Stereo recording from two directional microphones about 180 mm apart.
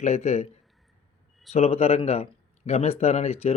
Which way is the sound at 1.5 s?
35° left (ahead or behind).